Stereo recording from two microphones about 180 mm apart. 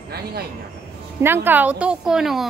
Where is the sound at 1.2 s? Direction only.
10° right (ahead or behind).